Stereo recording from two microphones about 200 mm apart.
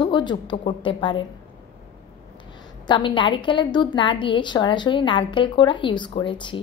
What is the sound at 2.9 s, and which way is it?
A woman's voice, 25° left (ahead or behind).